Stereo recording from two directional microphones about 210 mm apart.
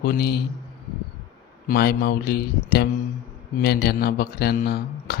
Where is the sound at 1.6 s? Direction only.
50° left (ahead or behind).